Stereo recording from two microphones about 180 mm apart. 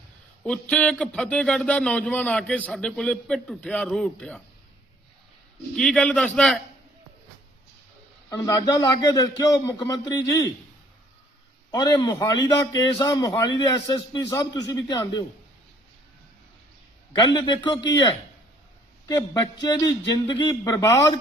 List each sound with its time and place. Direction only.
0.4 s speech: 5° left (ahead or behind)
5.7 s speech: 5° left (ahead or behind)
8.3 s a man's voice: 20° left (ahead or behind)
11.7 s a man's voice: 20° left (ahead or behind)
17.3 s a man's voice: 25° left (ahead or behind)
19.0 s a man's voice: 20° left (ahead or behind)